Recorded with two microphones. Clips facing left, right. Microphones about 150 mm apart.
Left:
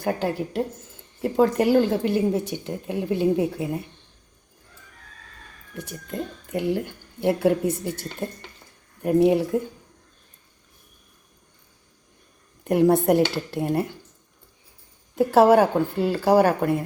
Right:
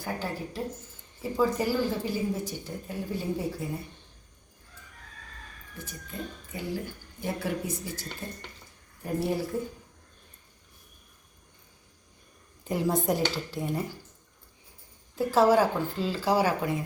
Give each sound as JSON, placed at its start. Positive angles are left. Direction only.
{"t": 0.0, "sound": "a woman's voice", "side_deg": 75}
{"t": 5.7, "sound": "a woman's voice", "side_deg": 70}
{"t": 12.6, "sound": "speech", "side_deg": 65}
{"t": 15.1, "sound": "speech", "side_deg": 75}